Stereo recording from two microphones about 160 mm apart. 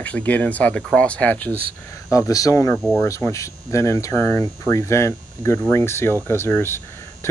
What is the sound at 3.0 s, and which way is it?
Speech, 20° left (ahead or behind).